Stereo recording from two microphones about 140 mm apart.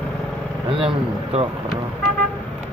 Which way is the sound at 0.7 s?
40° right (ahead or behind).